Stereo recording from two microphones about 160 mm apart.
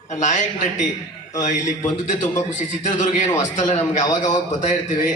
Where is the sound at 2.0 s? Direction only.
50° left (ahead or behind).